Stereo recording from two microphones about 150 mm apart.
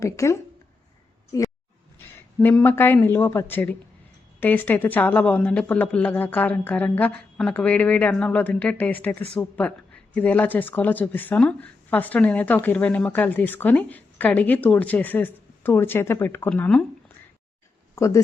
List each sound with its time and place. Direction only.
0.0 s a woman's voice: 20° left (ahead or behind)
17.9 s speech: 20° left (ahead or behind)